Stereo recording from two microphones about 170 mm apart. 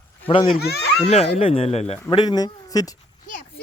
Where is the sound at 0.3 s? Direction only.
30° left (ahead or behind).